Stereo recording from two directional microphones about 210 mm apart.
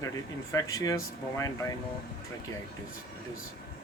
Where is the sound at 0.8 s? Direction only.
15° left (ahead or behind).